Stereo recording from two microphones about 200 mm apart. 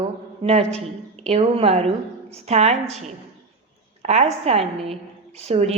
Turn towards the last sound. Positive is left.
turn(degrees=-30)  # may be behind; listen again after turning